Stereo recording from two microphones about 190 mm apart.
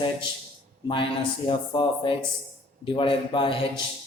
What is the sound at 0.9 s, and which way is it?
Speech, 25° left (ahead or behind).